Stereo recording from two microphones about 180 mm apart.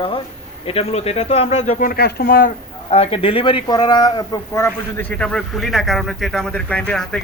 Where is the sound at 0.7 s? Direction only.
35° left (ahead or behind); by 2.5 s 55° left (ahead or behind).